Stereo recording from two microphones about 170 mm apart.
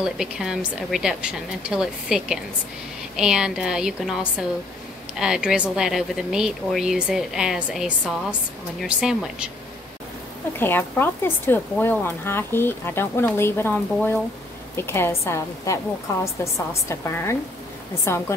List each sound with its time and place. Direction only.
0.0 s speech: 5° right (ahead or behind)
10.6 s speech: 10° left (ahead or behind)